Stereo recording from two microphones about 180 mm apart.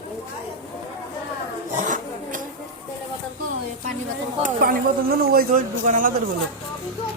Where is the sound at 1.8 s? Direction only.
45° right (ahead or behind).